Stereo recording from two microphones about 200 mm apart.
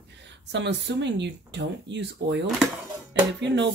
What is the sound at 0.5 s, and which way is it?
Speech, 60° right (ahead or behind).